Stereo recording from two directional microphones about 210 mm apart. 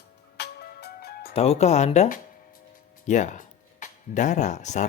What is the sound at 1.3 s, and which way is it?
Speech, 30° left (ahead or behind).